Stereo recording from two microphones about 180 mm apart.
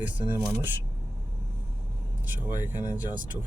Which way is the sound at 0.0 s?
10° right (ahead or behind).